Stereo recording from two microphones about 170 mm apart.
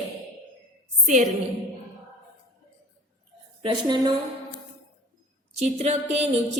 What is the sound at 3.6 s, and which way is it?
Speech, 25° right (ahead or behind).